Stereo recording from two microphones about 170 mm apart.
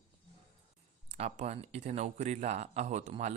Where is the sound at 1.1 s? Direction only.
40° right (ahead or behind).